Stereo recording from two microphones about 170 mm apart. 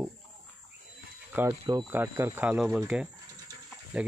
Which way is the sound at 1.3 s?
15° right (ahead or behind).